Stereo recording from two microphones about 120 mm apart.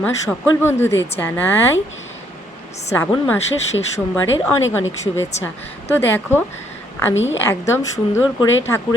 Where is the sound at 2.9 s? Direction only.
20° left (ahead or behind).